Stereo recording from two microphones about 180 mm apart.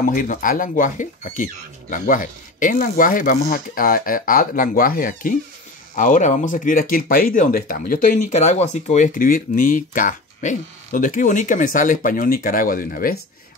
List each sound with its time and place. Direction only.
0.0 s speech: 50° left (ahead or behind)